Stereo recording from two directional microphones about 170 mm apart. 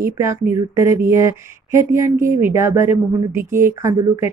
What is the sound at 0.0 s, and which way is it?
Speech, 15° right (ahead or behind).